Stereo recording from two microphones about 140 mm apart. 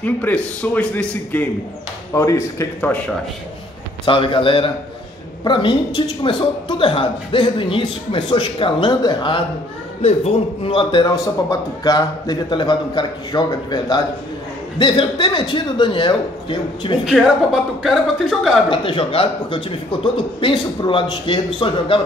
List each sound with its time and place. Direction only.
0.0 s a man's voice: 10° left (ahead or behind)
2.1 s a man's voice: 20° left (ahead or behind)
4.0 s a man's voice: 35° left (ahead or behind)
10.0 s a man's voice: 45° left (ahead or behind)
17.0 s speech: centre (ahead or behind)
18.7 s a man's voice: 40° left (ahead or behind)